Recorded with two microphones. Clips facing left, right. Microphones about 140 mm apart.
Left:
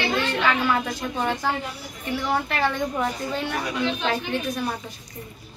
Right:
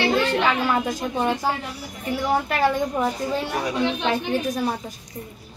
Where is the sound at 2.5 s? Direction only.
10° right (ahead or behind).